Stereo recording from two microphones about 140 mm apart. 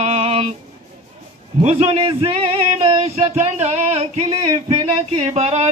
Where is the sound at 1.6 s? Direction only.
45° right (ahead or behind).